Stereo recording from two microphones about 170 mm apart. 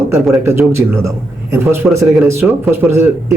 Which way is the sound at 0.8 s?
15° right (ahead or behind).